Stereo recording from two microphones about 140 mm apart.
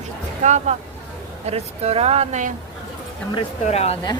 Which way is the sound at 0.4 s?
55° right (ahead or behind).